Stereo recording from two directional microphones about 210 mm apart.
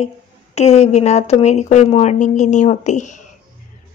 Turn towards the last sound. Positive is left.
turn(degrees=35)  # may be behind; listen again after turning